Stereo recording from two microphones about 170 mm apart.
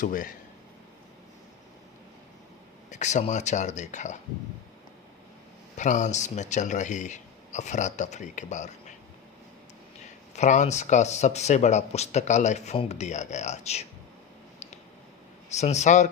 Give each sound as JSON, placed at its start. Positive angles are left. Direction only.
{"t": 0.0, "sound": "speech", "side_deg": 50}
{"t": 2.9, "sound": "speech", "side_deg": 45}
{"t": 5.7, "sound": "speech", "side_deg": 45}
{"t": 10.3, "sound": "speech", "side_deg": 45}
{"t": 15.4, "sound": "speech", "side_deg": 40}